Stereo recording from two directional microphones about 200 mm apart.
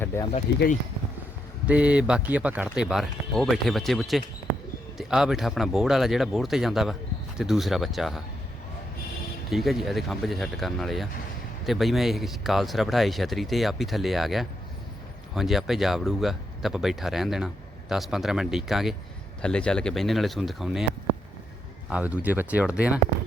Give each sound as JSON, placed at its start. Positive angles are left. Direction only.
{"t": 0.0, "sound": "speech", "side_deg": 10}
{"t": 0.5, "sound": "speech", "side_deg": 55}
{"t": 1.6, "sound": "speech", "side_deg": -5}
{"t": 9.5, "sound": "speech", "side_deg": 0}
{"t": 21.8, "sound": "speech", "side_deg": -5}